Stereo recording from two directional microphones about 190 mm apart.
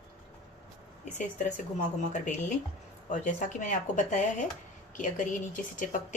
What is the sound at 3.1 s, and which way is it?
Speech, 40° left (ahead or behind).